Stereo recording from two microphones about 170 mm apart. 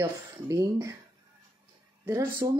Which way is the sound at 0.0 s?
20° right (ahead or behind).